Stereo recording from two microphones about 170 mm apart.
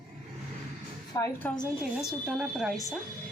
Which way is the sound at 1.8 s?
5° right (ahead or behind).